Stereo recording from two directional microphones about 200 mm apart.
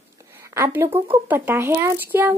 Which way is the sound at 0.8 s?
30° right (ahead or behind).